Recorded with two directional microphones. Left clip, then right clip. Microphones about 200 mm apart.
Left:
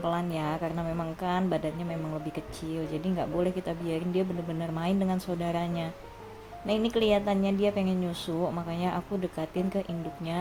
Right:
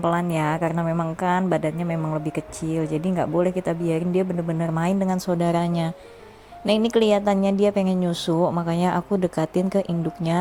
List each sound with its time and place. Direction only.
0.0 s a woman's voice: 30° right (ahead or behind)